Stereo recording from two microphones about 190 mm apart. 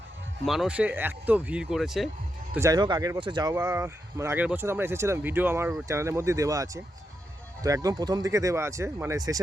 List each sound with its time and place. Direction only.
0.4 s speech: centre (ahead or behind)
2.6 s speech: 20° right (ahead or behind)